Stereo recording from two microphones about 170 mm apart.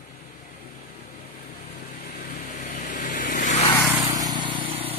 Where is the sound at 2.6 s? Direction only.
50° left (ahead or behind).